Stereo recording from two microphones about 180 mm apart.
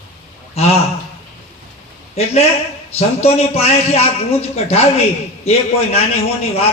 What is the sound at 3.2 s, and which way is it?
Speech, 35° left (ahead or behind).